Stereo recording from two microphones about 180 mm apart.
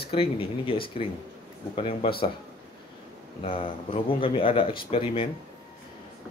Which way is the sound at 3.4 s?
30° left (ahead or behind).